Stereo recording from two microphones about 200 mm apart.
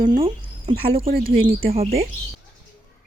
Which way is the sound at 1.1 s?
45° right (ahead or behind).